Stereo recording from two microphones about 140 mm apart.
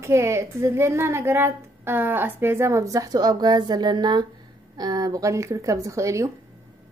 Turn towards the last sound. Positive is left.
turn(degrees=-20)  # may be behind; listen again after turning